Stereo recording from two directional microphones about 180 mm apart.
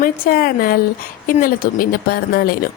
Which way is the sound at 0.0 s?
55° left (ahead or behind).